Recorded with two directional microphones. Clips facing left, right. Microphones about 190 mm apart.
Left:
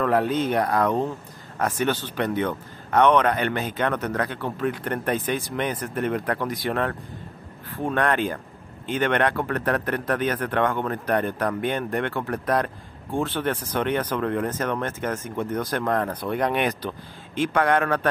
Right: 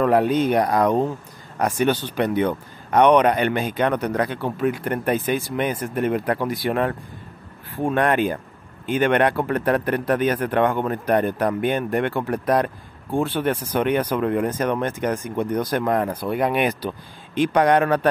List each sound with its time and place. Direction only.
0.0 s speech: 15° right (ahead or behind)